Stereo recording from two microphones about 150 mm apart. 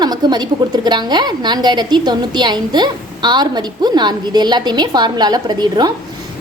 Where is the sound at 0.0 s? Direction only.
30° right (ahead or behind).